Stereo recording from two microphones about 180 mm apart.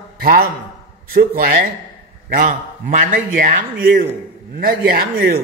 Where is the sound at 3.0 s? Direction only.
50° right (ahead or behind).